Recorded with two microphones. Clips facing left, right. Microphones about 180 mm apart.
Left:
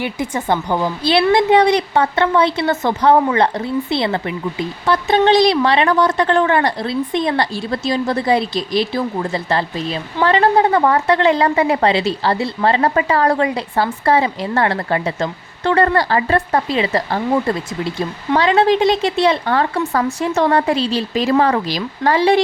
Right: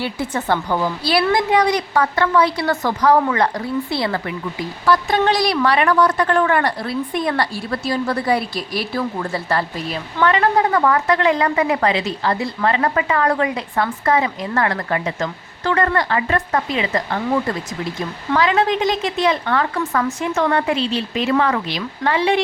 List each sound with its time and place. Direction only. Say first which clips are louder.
0.0 s a woman's voice: left 1 dB; 15° left (ahead or behind); by 17.2 s 30° left (ahead or behind)
18.3 s a woman's voice: left 4 dB; 30° left (ahead or behind)